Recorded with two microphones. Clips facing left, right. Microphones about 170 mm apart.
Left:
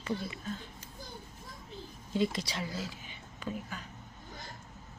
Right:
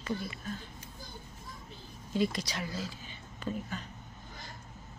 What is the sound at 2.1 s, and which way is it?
Speech, 20° left (ahead or behind).